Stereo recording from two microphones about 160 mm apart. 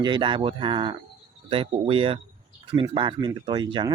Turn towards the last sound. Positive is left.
turn(degrees=-30)  # may be behind; listen again after turning